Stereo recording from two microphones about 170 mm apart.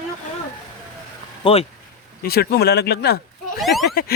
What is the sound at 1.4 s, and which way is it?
Speech, 35° left (ahead or behind).